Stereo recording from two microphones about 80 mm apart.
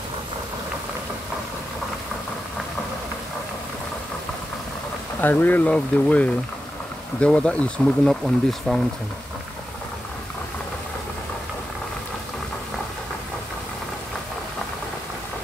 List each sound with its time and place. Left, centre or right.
5.2 s speech: left; by 8.8 s centre